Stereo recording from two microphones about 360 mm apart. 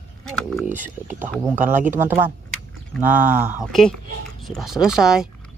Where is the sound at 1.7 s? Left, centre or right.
Right.